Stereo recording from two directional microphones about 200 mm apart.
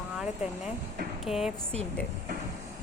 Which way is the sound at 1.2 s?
Centre (ahead or behind).